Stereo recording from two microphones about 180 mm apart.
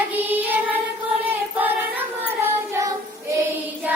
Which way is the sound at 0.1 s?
10° right (ahead or behind).